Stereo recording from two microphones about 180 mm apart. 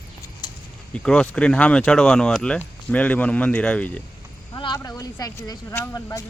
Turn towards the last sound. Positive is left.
turn(degrees=15)  # may be behind; listen again after turning